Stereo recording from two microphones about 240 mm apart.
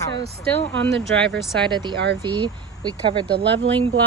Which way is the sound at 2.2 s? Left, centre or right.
Centre.